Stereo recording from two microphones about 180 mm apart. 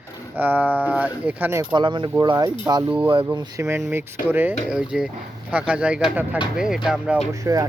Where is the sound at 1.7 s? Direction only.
25° right (ahead or behind); by 7.2 s 5° right (ahead or behind).